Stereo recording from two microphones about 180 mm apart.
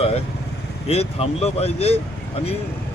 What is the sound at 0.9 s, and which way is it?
Speech, 35° left (ahead or behind).